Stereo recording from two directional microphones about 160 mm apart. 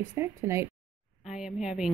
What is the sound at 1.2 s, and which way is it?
Speech, 5° right (ahead or behind).